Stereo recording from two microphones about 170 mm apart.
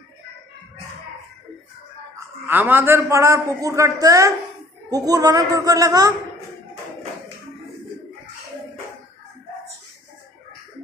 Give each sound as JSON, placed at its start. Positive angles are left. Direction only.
{"t": 2.1, "sound": "a woman's voice", "side_deg": -10}